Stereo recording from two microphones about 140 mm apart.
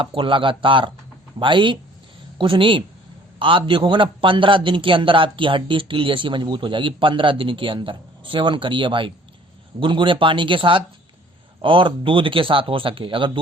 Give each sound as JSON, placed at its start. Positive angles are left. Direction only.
{"t": 0.0, "sound": "a man's voice", "side_deg": -40}